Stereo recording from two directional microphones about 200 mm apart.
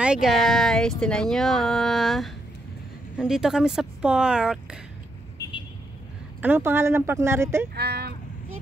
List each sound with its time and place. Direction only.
0.0 s speech: 5° right (ahead or behind)
6.4 s speech: 10° right (ahead or behind)
7.7 s vehicle: 55° right (ahead or behind)